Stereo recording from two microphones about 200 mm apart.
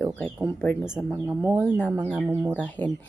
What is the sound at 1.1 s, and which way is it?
Speech, 15° right (ahead or behind).